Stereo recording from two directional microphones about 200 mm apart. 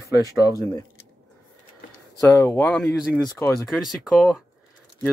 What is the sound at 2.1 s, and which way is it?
Speech, 10° left (ahead or behind).